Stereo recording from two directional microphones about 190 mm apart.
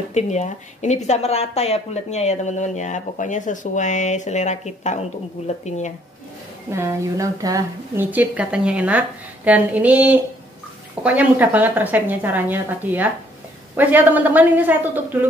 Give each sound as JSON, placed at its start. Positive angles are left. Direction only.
{"t": 0.1, "sound": "speech", "side_deg": 35}
{"t": 6.7, "sound": "a woman's voice", "side_deg": -15}